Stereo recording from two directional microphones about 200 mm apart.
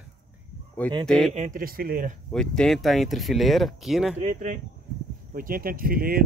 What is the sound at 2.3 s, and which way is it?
Speech, 5° left (ahead or behind).